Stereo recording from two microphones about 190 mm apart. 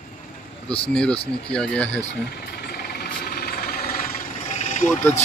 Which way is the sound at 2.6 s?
55° left (ahead or behind).